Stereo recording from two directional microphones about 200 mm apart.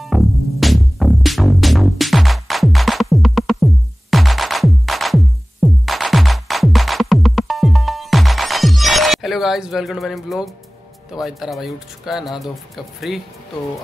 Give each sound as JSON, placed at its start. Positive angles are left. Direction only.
{"t": 0.0, "sound": "music", "side_deg": 0}
{"t": 11.1, "sound": "speech", "side_deg": 0}